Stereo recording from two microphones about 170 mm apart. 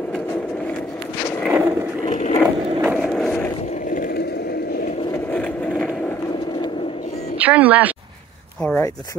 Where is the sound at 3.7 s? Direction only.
50° left (ahead or behind); by 4.8 s 70° left (ahead or behind).